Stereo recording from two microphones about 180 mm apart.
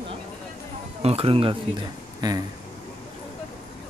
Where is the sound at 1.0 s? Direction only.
30° right (ahead or behind).